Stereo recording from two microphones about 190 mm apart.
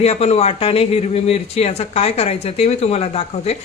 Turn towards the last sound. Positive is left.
turn(degrees=35)  # may be behind; listen again after turning